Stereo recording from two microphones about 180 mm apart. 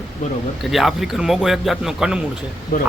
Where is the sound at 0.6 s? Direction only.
Centre (ahead or behind).